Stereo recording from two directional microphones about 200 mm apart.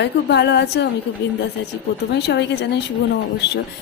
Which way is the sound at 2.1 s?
55° left (ahead or behind).